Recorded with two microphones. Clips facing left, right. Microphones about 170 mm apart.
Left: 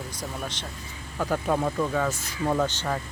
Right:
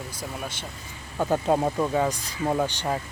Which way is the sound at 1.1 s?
25° right (ahead or behind).